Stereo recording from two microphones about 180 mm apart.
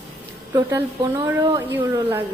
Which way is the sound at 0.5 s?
20° right (ahead or behind).